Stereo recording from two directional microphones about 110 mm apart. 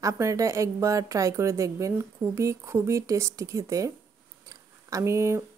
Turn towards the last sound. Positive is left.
turn(degrees=-25)  # may be behind; listen again after turning